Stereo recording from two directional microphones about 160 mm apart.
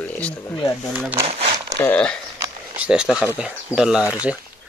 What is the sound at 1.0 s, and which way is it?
Speech, 10° right (ahead or behind).